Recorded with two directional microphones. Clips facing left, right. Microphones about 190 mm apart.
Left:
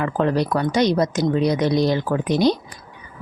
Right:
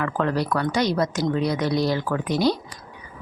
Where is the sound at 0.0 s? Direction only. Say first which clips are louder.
Left 4 dB; 20° left (ahead or behind).